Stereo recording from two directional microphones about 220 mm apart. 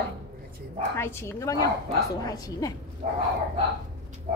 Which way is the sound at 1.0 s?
10° left (ahead or behind).